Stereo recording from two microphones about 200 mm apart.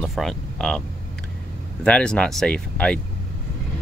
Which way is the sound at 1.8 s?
5° left (ahead or behind).